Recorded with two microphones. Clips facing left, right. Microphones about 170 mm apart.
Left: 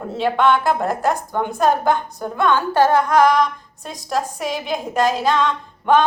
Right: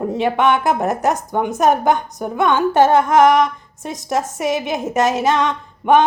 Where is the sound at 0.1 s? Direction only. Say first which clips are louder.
Left 1 dB; 20° right (ahead or behind).